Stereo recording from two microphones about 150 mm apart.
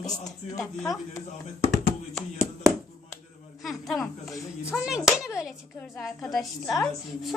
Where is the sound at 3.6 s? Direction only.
Centre (ahead or behind).